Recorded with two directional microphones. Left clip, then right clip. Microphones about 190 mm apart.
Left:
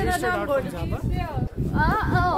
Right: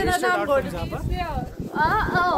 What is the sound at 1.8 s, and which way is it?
Speech, 5° right (ahead or behind).